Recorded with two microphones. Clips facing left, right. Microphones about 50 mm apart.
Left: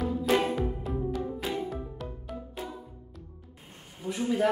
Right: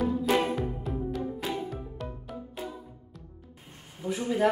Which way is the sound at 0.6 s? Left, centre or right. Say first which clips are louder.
Left 1 dB; centre.